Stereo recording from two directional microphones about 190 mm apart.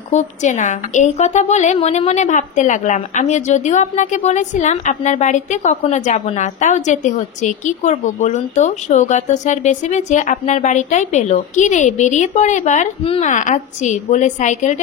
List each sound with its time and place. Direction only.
0.1 s a woman's voice: 40° left (ahead or behind)